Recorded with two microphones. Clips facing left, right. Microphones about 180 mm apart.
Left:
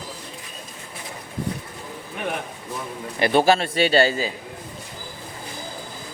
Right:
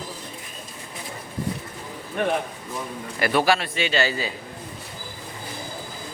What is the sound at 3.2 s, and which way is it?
A man's voice, 25° left (ahead or behind).